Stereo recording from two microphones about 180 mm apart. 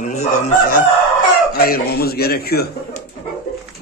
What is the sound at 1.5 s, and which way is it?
A man's voice, 55° left (ahead or behind).